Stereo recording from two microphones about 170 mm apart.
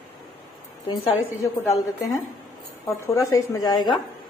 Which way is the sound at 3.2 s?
20° left (ahead or behind).